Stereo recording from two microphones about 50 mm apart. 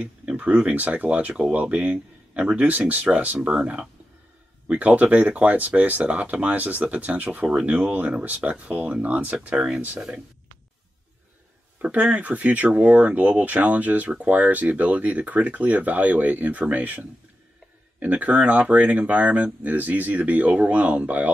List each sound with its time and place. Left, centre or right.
0.0 s speech: right
1.3 s speech: centre
4.6 s speech: right
11.8 s speech: right